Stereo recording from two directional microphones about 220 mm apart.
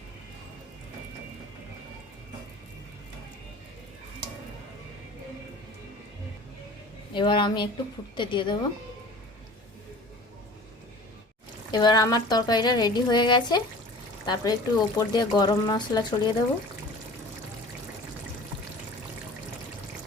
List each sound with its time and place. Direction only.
7.1 s speech: 20° left (ahead or behind)
11.7 s speech: 20° left (ahead or behind)